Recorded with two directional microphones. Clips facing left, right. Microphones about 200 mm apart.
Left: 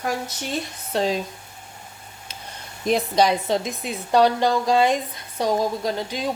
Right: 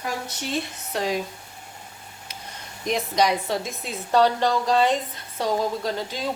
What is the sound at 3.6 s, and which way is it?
A woman's voice, 15° left (ahead or behind).